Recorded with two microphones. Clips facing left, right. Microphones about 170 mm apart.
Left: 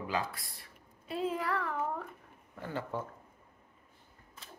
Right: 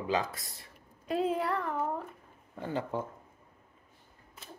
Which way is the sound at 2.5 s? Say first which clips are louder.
Right 4 dB; 20° right (ahead or behind).